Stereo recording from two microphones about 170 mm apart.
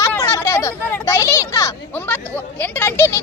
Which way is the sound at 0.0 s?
15° left (ahead or behind).